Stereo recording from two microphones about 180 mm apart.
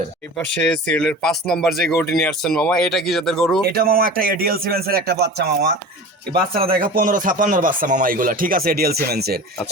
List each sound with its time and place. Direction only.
0.3 s speech: 5° left (ahead or behind)
3.7 s speech: 55° right (ahead or behind)
6.7 s speech: 55° right (ahead or behind)